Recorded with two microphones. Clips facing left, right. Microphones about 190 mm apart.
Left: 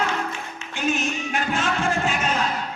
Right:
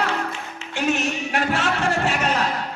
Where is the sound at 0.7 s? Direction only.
70° right (ahead or behind).